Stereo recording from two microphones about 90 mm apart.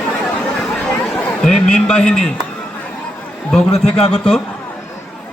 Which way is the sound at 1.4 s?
5° left (ahead or behind).